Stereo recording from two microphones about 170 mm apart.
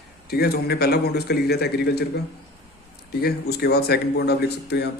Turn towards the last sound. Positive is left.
turn(degrees=75)  # may be behind; listen again after turning